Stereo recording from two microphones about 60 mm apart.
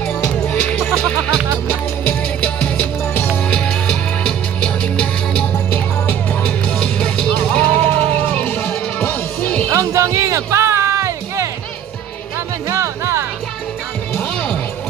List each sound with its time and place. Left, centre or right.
0.0 s music: left
2.4 s music: centre
9.7 s music: right
12.6 s music: right